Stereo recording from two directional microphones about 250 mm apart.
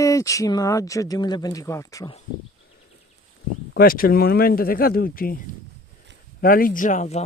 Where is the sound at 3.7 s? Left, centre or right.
Left.